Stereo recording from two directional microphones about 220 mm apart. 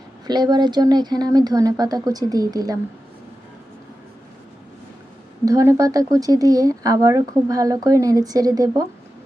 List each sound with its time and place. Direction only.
0.3 s speech: 20° right (ahead or behind)
5.5 s speech: 15° right (ahead or behind)